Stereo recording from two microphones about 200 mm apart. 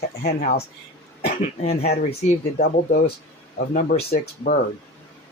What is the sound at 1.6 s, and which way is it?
Speech, 35° left (ahead or behind).